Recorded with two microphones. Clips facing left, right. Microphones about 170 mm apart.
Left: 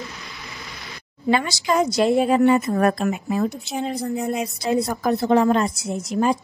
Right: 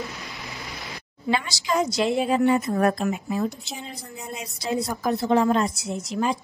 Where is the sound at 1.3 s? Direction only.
55° left (ahead or behind).